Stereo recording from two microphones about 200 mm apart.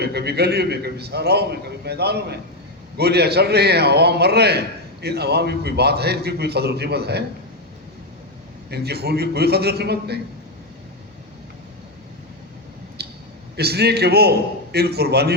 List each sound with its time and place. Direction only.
0.0 s a man's voice: 55° right (ahead or behind)
8.7 s a man's voice: 55° right (ahead or behind)
13.0 s a sound: 55° right (ahead or behind)
13.6 s a man's voice: 55° right (ahead or behind)